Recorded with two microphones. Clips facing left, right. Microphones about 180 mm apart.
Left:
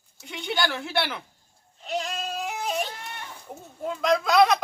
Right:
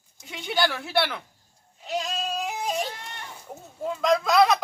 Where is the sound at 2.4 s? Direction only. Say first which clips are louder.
Right 1 dB; 15° right (ahead or behind).